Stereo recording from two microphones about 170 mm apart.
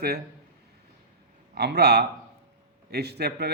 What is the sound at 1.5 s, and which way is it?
A man's voice, 75° right (ahead or behind).